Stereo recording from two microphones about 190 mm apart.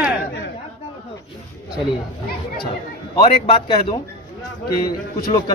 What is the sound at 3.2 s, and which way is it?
Speech, 30° left (ahead or behind).